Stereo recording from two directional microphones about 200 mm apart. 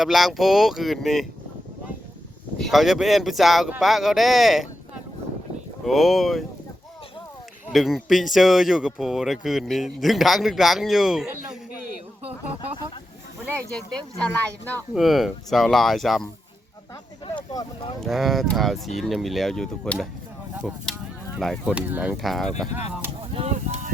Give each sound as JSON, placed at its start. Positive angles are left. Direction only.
{"t": 0.0, "sound": "speech", "side_deg": 0}
{"t": 2.6, "sound": "speech", "side_deg": 0}
{"t": 5.8, "sound": "speech", "side_deg": 0}
{"t": 7.7, "sound": "speech", "side_deg": 0}
{"t": 13.6, "sound": "speech", "side_deg": 5}
{"t": 17.2, "sound": "speech", "side_deg": 20}
{"t": 18.0, "sound": "speech", "side_deg": 0}
{"t": 21.7, "sound": "speech", "side_deg": -10}
{"t": 22.7, "sound": "speech", "side_deg": -10}
{"t": 23.3, "sound": "a sound", "side_deg": -30}